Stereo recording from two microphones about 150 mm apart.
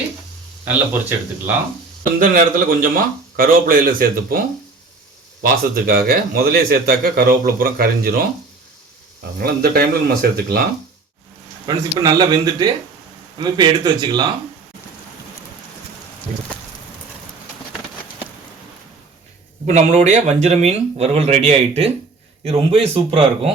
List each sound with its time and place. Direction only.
2.1 s a man's voice: 70° right (ahead or behind); by 8.3 s 85° right
9.4 s speech: 90° right
11.6 s a man's voice: 25° right (ahead or behind)
19.6 s speech: 50° right (ahead or behind)